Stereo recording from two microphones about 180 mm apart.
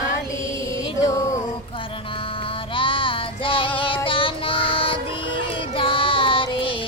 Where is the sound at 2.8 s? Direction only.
30° left (ahead or behind).